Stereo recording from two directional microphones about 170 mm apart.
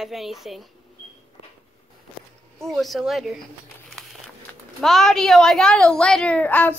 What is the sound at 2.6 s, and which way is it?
Speech, centre (ahead or behind).